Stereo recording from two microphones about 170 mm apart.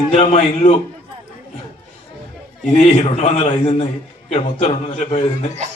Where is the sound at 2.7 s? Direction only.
40° left (ahead or behind).